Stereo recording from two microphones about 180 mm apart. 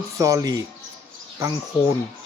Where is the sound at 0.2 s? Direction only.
15° right (ahead or behind).